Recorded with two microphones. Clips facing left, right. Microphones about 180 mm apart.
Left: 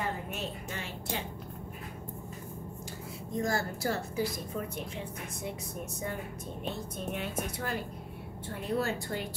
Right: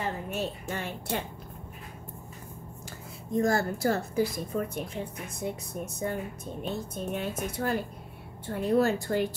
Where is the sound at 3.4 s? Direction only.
50° right (ahead or behind).